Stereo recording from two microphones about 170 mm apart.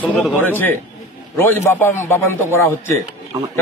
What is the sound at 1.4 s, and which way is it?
A man's voice, 10° left (ahead or behind).